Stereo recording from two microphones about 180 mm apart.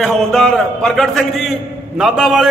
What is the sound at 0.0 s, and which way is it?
A man's voice, 5° left (ahead or behind).